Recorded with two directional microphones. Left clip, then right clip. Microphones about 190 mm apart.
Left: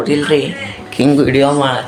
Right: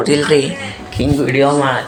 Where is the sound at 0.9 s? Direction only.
40° left (ahead or behind).